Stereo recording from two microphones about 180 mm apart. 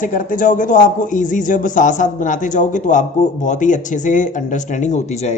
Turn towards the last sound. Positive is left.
turn(degrees=40)  # may be behind; listen again after turning